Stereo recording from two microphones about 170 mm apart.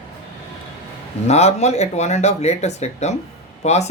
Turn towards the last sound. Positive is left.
turn(degrees=40)  # may be behind; listen again after turning